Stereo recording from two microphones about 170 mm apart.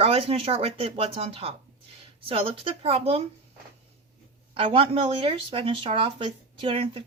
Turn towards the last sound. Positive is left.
turn(degrees=-30)  # may be behind; listen again after turning